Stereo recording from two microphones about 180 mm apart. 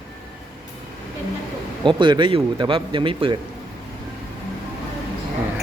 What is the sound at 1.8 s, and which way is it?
Speech, 25° right (ahead or behind).